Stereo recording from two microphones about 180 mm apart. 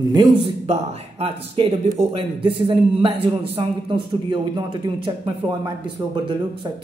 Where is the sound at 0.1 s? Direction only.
20° right (ahead or behind).